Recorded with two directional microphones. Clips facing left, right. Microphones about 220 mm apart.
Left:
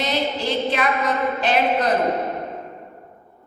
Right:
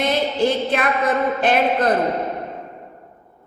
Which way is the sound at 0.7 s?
50° right (ahead or behind).